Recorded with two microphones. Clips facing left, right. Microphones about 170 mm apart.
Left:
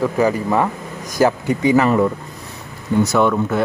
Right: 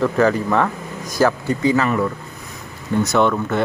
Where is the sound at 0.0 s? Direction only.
10° left (ahead or behind).